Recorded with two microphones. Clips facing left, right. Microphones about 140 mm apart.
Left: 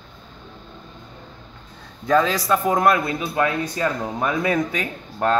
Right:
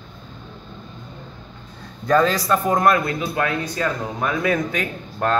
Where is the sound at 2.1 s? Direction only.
5° left (ahead or behind).